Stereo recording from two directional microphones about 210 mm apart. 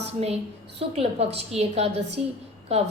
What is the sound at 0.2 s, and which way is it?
A woman's voice, 30° right (ahead or behind).